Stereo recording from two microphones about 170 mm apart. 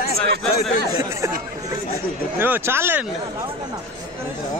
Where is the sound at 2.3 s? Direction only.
10° right (ahead or behind).